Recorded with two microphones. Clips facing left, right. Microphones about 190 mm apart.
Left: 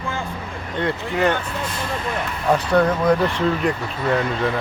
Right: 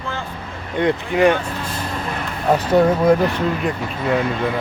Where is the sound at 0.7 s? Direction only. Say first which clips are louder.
Right 5 dB; 15° right (ahead or behind).